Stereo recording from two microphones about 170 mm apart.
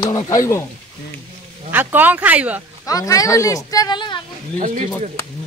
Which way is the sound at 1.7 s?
10° right (ahead or behind).